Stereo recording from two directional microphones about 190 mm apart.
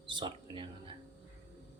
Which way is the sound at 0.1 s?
25° right (ahead or behind).